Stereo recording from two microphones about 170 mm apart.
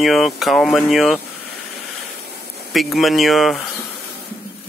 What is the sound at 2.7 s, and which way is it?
Speech, centre (ahead or behind).